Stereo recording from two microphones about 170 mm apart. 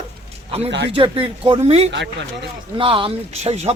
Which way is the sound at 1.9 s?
90° right.